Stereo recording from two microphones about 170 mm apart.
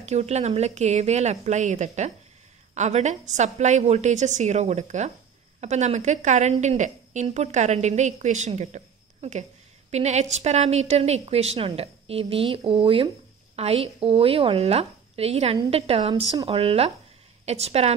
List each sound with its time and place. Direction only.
0.0 s a woman's voice: 40° right (ahead or behind)